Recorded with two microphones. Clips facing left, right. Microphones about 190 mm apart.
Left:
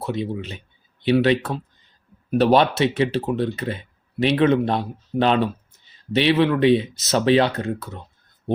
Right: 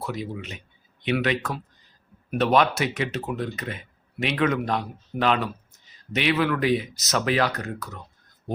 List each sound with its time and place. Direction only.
0.0 s speech: 25° left (ahead or behind)